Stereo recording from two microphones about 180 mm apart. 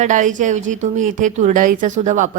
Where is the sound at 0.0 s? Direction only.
45° right (ahead or behind).